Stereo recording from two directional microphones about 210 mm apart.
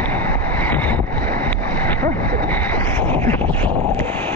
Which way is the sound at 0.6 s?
10° left (ahead or behind).